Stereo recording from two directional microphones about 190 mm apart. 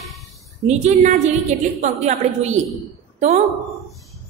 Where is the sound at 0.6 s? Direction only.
35° right (ahead or behind).